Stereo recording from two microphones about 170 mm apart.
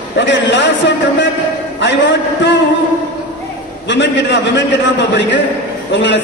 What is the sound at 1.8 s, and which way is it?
Speech, 90° left.